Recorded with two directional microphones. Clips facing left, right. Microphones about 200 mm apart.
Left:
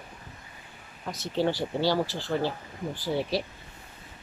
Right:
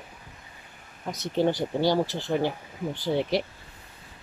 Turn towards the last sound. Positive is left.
turn(degrees=-20)  # may be behind; listen again after turning